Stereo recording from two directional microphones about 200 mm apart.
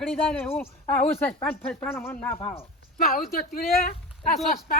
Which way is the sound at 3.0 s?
45° left (ahead or behind).